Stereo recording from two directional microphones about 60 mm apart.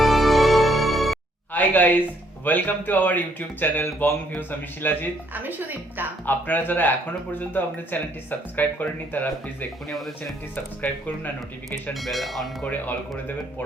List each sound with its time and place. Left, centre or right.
0.0 s music: centre
1.5 s speech: left
5.3 s speech: right
6.2 s speech: left
11.9 s speech: centre
12.6 s speech: left